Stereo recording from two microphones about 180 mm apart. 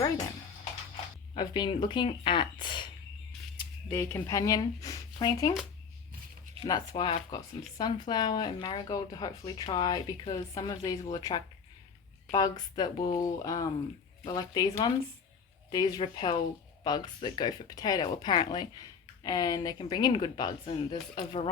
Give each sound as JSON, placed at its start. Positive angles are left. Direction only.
{"t": 1.3, "sound": "speech", "side_deg": 25}
{"t": 3.8, "sound": "speech", "side_deg": 15}
{"t": 6.6, "sound": "speech", "side_deg": 25}